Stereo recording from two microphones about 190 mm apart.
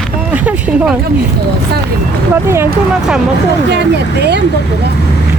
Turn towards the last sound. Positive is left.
turn(degrees=-65)  # may be behind; listen again after turning